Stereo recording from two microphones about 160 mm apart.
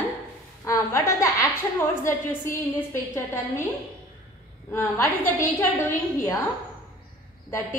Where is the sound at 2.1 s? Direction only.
15° left (ahead or behind).